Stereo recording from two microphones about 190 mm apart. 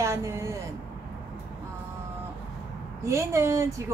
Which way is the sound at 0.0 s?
15° right (ahead or behind).